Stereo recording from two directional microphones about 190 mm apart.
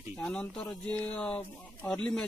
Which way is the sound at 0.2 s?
5° left (ahead or behind).